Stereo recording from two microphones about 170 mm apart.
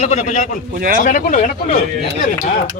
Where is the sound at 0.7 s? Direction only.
55° right (ahead or behind).